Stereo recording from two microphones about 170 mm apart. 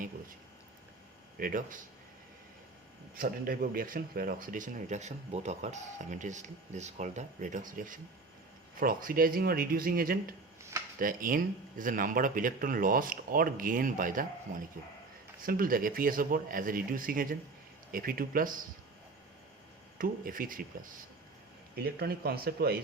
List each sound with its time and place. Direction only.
1.4 s speech: 55° right (ahead or behind)
3.2 s speech: 55° right (ahead or behind)
20.0 s speech: 55° right (ahead or behind)
21.8 s speech: 70° right (ahead or behind)